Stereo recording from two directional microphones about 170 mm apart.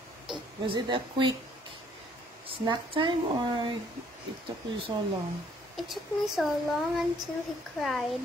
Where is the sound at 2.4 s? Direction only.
30° right (ahead or behind).